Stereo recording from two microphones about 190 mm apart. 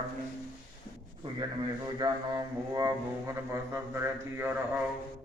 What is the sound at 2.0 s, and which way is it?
Music, 20° right (ahead or behind).